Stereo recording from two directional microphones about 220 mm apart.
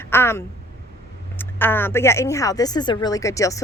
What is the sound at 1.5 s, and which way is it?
Speech, 10° left (ahead or behind).